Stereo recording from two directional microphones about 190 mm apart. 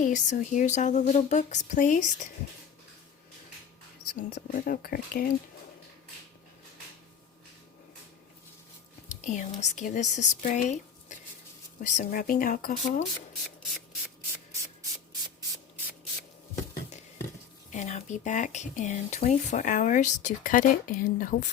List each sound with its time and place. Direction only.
0.0 s speech: 40° left (ahead or behind)
4.1 s speech: 45° left (ahead or behind)
9.2 s speech: 40° left (ahead or behind)
11.8 s speech: 45° left (ahead or behind)
17.7 s speech: 40° left (ahead or behind)